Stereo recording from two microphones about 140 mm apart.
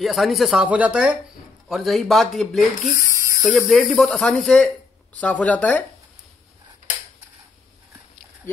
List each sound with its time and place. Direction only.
0.0 s speech: centre (ahead or behind)
2.9 s electric toothbrush: 25° right (ahead or behind)
3.4 s speech: centre (ahead or behind)